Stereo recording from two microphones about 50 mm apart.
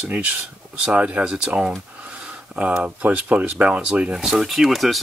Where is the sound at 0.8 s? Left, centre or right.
Right.